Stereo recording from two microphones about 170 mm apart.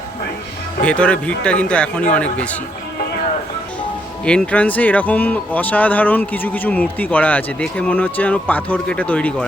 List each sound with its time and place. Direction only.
0.8 s speech: 5° left (ahead or behind)
4.3 s speech: 5° left (ahead or behind)